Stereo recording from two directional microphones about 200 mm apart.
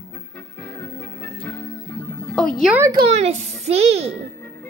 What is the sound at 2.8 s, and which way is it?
Speech, 20° right (ahead or behind).